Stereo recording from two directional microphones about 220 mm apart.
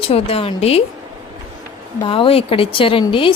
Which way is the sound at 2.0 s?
25° left (ahead or behind).